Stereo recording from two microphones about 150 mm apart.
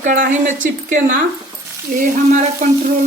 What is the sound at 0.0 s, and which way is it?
Speech, 60° right (ahead or behind).